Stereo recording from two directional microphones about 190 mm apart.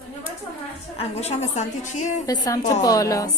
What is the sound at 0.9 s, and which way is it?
A woman's voice, 35° left (ahead or behind).